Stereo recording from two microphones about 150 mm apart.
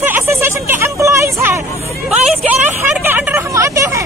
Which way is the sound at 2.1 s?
5° right (ahead or behind).